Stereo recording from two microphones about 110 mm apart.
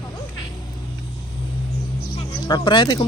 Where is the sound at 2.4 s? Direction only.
45° left (ahead or behind).